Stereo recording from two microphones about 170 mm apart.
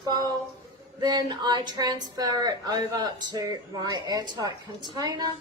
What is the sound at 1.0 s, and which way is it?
Speech, 25° right (ahead or behind).